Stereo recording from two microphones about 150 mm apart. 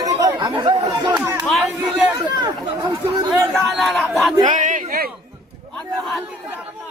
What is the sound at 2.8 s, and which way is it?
Speech, 10° right (ahead or behind).